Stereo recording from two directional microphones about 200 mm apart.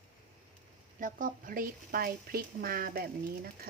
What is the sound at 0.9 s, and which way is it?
Speech, 40° right (ahead or behind).